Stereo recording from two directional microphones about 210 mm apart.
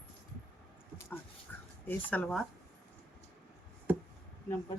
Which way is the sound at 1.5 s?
10° left (ahead or behind).